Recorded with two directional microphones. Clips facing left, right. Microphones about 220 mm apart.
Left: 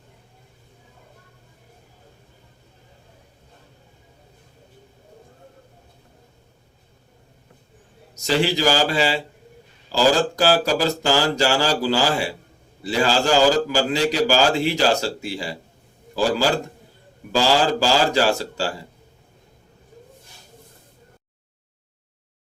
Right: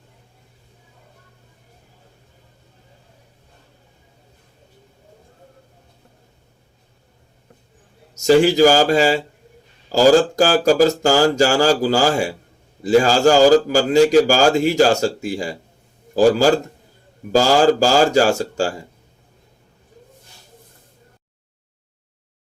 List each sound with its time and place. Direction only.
8.1 s a man's voice: 45° right (ahead or behind)